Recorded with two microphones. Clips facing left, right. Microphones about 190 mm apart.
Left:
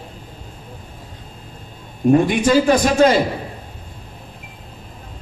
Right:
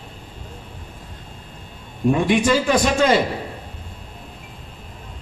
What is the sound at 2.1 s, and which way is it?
Speech, 40° left (ahead or behind).